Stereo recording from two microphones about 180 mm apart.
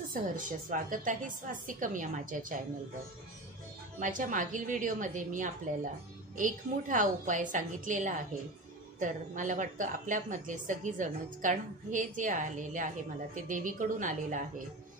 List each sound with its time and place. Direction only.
0.1 s a woman's voice: 50° right (ahead or behind)
4.0 s a woman's voice: 45° right (ahead or behind)